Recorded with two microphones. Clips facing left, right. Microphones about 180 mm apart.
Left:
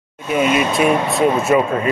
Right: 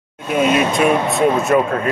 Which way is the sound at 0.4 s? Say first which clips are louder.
Right 1 dB; centre (ahead or behind).